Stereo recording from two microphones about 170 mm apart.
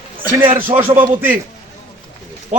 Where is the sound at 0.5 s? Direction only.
10° right (ahead or behind).